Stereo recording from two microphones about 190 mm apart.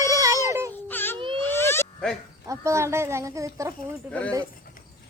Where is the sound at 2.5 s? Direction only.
15° right (ahead or behind).